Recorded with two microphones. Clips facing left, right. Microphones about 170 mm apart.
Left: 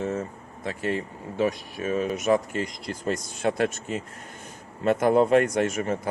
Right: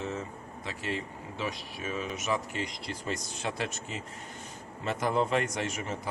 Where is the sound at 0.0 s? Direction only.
50° left (ahead or behind).